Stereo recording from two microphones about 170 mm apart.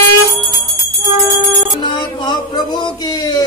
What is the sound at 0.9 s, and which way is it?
Music, 20° right (ahead or behind).